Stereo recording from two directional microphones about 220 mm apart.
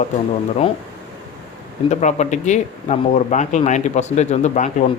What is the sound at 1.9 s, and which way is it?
Speech, 30° left (ahead or behind).